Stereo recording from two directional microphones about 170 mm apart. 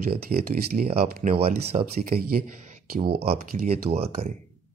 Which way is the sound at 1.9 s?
55° right (ahead or behind).